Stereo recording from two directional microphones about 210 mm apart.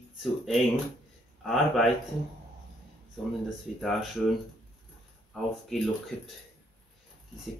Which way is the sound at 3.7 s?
Centre (ahead or behind).